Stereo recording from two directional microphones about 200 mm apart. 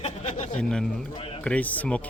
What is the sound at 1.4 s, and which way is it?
Speech, 5° left (ahead or behind).